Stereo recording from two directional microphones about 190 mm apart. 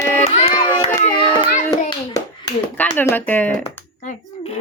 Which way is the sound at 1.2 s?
25° left (ahead or behind).